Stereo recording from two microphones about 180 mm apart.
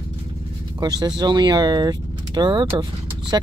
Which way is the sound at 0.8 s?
20° right (ahead or behind).